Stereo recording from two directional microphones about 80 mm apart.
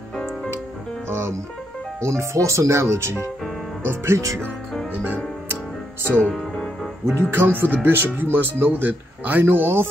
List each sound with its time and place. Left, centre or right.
0.1 s music: centre
1.0 s music: right
2.0 s speech: right
4.9 s music: right
6.3 s music: centre
7.2 s speech: right